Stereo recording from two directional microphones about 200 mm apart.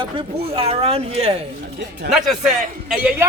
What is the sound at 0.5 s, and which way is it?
Speech, 30° right (ahead or behind).